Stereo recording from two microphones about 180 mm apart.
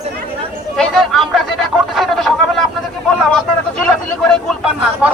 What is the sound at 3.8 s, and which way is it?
Speech, 5° left (ahead or behind).